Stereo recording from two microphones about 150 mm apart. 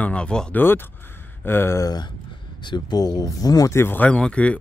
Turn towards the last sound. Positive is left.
turn(degrees=10)  # may be behind; listen again after turning